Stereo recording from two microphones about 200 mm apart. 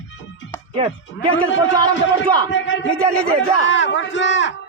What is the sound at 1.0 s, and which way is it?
A man's voice, 70° left (ahead or behind).